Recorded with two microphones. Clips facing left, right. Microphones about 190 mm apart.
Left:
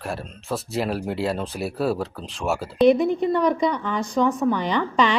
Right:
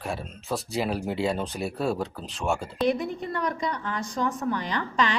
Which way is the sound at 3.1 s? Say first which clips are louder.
Left 10 dB; 90° left.